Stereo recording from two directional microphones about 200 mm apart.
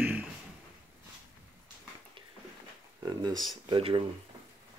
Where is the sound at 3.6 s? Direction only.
25° right (ahead or behind).